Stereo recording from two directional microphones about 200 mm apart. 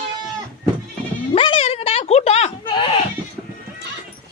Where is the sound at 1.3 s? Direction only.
30° left (ahead or behind).